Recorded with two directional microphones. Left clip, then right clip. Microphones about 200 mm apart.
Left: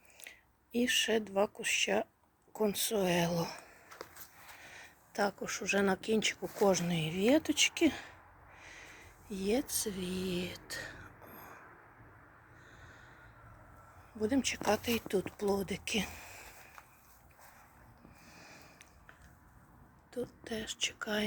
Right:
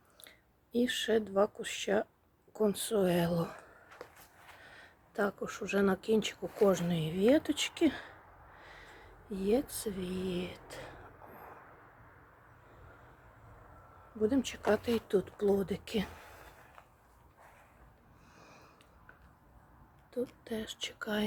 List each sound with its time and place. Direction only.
0.2 s speech: 10° right (ahead or behind)
3.8 s a sound: 50° left (ahead or behind)
4.6 s a woman's voice: 10° right (ahead or behind)
14.2 s speech: 5° right (ahead or behind)
18.3 s a sound: 10° right (ahead or behind)
20.1 s speech: 5° right (ahead or behind)